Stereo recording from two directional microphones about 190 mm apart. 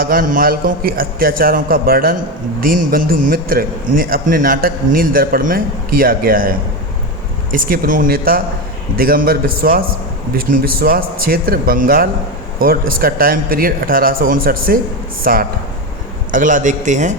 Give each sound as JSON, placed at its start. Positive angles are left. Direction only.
{"t": 0.0, "sound": "a man's voice", "side_deg": -50}